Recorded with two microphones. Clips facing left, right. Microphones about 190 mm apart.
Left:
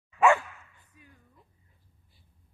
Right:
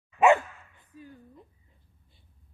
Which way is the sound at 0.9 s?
30° right (ahead or behind).